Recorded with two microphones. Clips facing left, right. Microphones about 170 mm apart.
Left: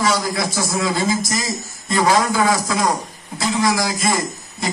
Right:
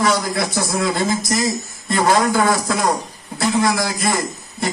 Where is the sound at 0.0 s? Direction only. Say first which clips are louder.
Right 1 dB; 55° right (ahead or behind).